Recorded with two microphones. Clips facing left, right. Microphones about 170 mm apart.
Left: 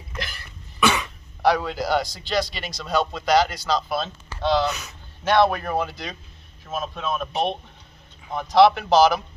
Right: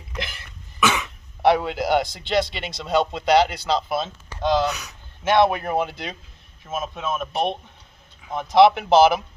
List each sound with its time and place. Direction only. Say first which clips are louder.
0.1 s cough: right 2 dB; 20° right (ahead or behind)
1.4 s a man's voice: right 2 dB; 25° right (ahead or behind)
6.7 s speech: even; 5° right (ahead or behind)
8.5 s a man's voice: right 1 dB; 20° right (ahead or behind)